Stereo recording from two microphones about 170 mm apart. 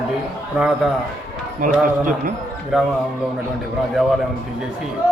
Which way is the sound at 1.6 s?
50° right (ahead or behind).